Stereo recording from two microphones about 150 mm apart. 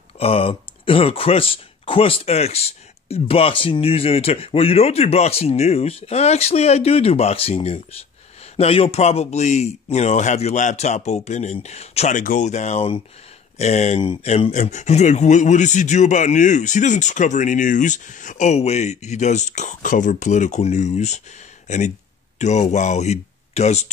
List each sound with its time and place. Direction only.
0.2 s speech: 40° left (ahead or behind)